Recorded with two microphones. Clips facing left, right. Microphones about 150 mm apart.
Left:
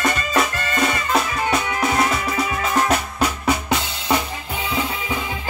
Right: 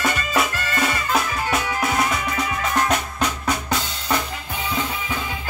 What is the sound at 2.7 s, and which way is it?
Drum, 5° left (ahead or behind).